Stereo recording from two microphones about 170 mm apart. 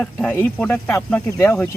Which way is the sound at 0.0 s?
10° left (ahead or behind).